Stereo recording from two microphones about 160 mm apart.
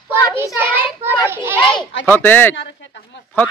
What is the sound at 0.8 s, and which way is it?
Child singing, 30° left (ahead or behind).